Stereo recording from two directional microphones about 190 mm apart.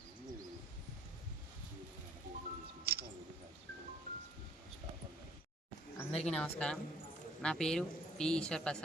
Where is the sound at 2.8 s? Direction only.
55° right (ahead or behind).